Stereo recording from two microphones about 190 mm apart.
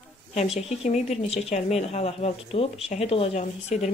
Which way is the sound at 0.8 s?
30° left (ahead or behind).